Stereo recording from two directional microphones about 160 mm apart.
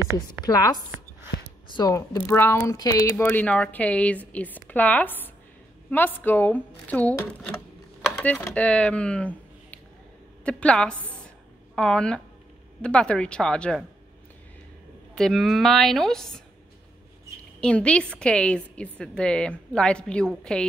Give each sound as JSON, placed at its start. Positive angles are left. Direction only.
{"t": 0.4, "sound": "a woman's voice", "side_deg": 25}
{"t": 15.1, "sound": "a woman's voice", "side_deg": 0}
{"t": 17.6, "sound": "a woman's voice", "side_deg": 5}